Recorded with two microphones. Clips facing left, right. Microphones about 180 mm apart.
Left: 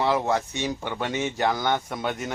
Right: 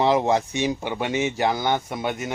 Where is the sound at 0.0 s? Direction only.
20° right (ahead or behind).